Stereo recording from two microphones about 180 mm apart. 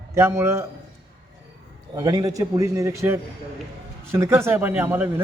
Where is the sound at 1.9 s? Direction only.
20° right (ahead or behind).